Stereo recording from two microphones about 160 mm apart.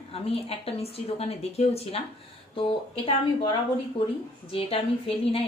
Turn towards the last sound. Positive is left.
turn(degrees=35)  # may be behind; listen again after turning